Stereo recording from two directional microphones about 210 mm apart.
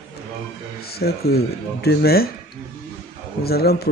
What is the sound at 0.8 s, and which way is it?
A man's voice, 50° left (ahead or behind).